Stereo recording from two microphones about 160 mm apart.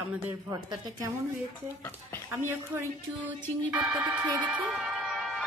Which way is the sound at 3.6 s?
10° right (ahead or behind).